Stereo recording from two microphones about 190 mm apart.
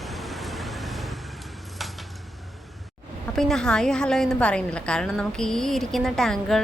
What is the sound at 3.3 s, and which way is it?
A woman's voice, centre (ahead or behind).